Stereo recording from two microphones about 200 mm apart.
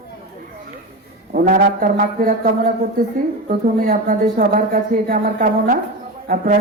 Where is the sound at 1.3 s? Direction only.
45° right (ahead or behind).